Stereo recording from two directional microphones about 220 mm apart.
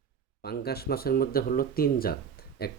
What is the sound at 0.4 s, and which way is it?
Speech, 45° left (ahead or behind).